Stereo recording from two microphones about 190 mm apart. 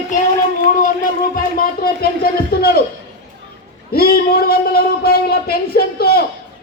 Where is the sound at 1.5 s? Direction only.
50° left (ahead or behind).